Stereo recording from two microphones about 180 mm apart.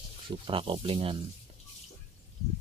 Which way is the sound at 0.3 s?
30° right (ahead or behind).